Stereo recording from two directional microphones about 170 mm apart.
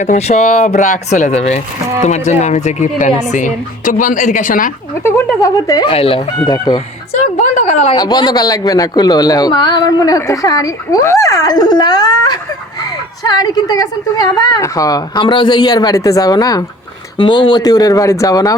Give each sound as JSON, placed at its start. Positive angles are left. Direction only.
{"t": 0.0, "sound": "speech", "side_deg": 40}
{"t": 5.0, "sound": "speech", "side_deg": 15}
{"t": 5.9, "sound": "speech", "side_deg": 35}
{"t": 7.1, "sound": "speech", "side_deg": 40}
{"t": 7.9, "sound": "speech", "side_deg": 25}